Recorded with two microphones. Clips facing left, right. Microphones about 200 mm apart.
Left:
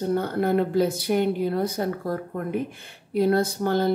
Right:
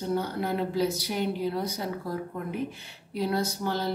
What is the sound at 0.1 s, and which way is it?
Speech, 55° left (ahead or behind).